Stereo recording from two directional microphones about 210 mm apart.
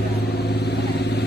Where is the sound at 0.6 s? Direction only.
50° left (ahead or behind).